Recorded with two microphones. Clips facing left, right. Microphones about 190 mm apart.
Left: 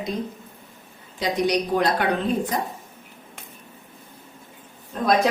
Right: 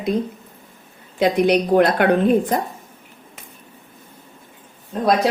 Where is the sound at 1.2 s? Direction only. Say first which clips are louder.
Right 6 dB; 55° right (ahead or behind).